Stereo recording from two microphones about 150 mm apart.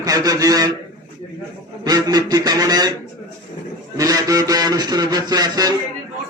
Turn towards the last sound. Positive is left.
turn(degrees=-25)  # may be behind; listen again after turning